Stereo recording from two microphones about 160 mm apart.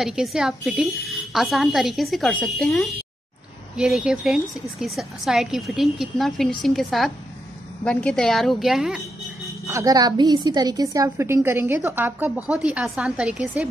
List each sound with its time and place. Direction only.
0.0 s a woman's voice: centre (ahead or behind)
9.7 s a woman's voice: 20° right (ahead or behind)